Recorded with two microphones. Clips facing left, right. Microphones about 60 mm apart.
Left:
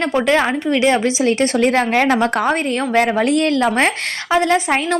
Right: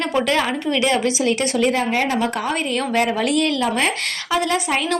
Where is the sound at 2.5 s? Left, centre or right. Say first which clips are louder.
Left 4 dB; left.